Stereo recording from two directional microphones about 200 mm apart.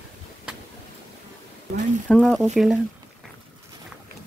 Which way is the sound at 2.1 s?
5° left (ahead or behind).